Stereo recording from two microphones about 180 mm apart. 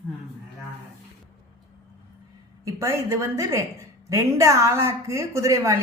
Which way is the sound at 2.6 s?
15° right (ahead or behind).